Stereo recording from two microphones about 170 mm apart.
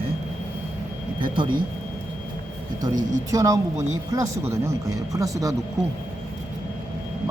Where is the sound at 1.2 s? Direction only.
30° right (ahead or behind).